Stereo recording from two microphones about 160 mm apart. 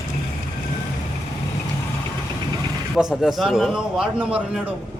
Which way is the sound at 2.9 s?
Centre (ahead or behind).